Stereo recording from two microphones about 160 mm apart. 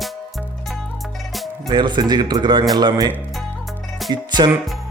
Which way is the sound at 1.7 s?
30° right (ahead or behind).